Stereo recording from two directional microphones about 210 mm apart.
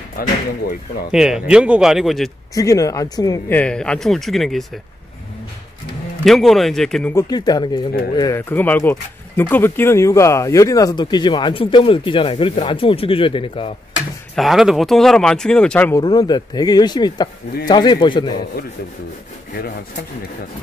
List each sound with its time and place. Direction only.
1.1 s speech: 5° right (ahead or behind)
2.5 s speech: 15° left (ahead or behind)
6.2 s speech: centre (ahead or behind)
7.2 s speech: 20° left (ahead or behind)
14.3 s speech: centre (ahead or behind)
16.0 s speech: 20° left (ahead or behind)